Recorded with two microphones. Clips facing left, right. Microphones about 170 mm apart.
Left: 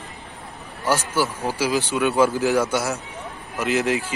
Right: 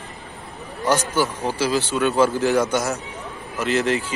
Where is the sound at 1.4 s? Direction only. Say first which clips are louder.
Right 1 dB; 10° left (ahead or behind).